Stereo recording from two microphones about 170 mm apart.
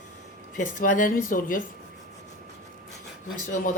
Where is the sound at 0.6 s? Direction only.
50° left (ahead or behind).